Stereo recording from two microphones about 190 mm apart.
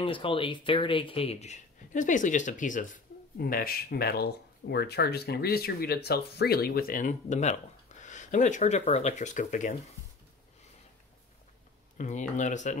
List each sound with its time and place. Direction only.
0.0 s speech: 25° left (ahead or behind)
12.0 s speech: 40° left (ahead or behind)